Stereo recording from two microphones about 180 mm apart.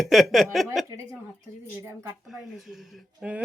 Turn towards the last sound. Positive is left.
turn(degrees=-5)  # may be behind; listen again after turning